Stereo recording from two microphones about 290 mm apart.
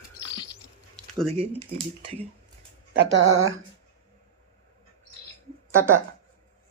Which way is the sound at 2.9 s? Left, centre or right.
Right.